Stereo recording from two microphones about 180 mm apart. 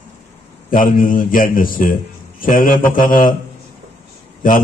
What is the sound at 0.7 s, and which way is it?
A man's voice, 50° left (ahead or behind).